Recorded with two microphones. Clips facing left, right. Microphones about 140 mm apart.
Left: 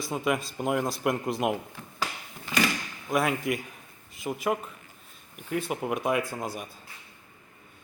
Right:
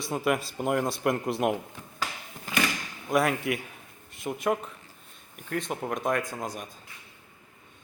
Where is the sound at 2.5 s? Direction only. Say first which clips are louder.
Left 1 dB; 45° right (ahead or behind).